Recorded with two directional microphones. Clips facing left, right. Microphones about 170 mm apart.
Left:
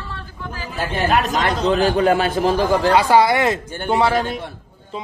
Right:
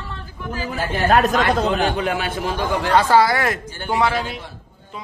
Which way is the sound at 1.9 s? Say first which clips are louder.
Left 6 dB; 40° left (ahead or behind).